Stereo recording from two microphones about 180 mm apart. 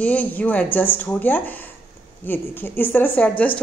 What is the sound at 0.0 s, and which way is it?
Speech, 10° left (ahead or behind).